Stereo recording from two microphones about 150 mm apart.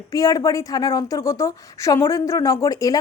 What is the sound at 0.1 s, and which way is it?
A woman's voice, 25° left (ahead or behind).